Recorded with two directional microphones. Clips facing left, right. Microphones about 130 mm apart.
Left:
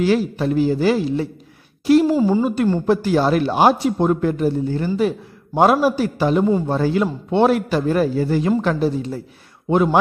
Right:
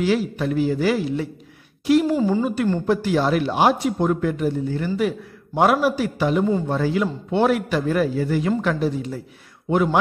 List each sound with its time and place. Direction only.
0.0 s a man's voice: 45° left (ahead or behind)
0.5 s speech: 30° left (ahead or behind)